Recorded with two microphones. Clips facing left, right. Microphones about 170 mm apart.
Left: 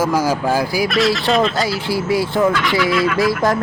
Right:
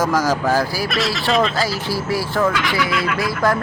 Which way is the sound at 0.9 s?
Centre (ahead or behind).